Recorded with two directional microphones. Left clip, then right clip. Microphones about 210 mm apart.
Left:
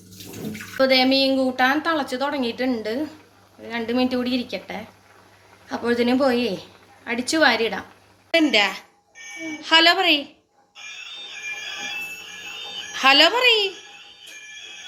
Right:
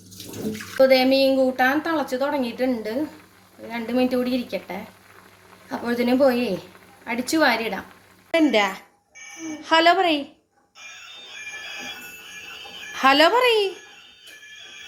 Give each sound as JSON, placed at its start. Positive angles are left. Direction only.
{"t": 0.8, "sound": "a woman's voice", "side_deg": -5}
{"t": 8.3, "sound": "a woman's voice", "side_deg": -20}
{"t": 12.9, "sound": "a woman's voice", "side_deg": -25}